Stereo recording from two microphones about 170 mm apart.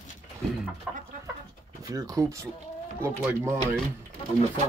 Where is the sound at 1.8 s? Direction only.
20° right (ahead or behind).